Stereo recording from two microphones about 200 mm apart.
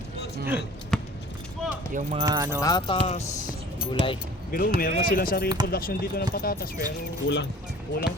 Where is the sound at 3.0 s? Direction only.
30° left (ahead or behind).